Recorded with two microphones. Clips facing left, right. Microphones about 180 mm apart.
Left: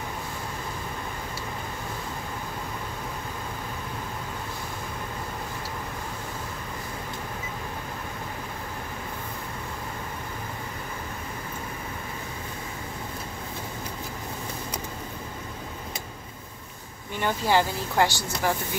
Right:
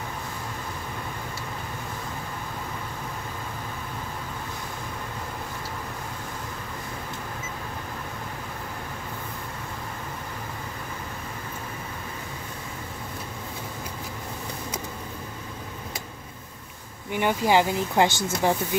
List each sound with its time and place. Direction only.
17.1 s speech: 15° right (ahead or behind)